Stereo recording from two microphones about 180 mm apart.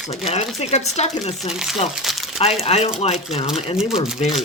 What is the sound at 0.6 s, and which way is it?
Speech, 35° left (ahead or behind).